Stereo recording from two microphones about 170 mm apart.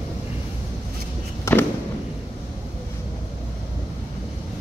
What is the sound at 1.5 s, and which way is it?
Fireworks, 15° left (ahead or behind).